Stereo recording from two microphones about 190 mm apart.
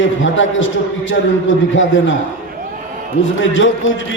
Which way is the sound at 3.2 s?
80° left.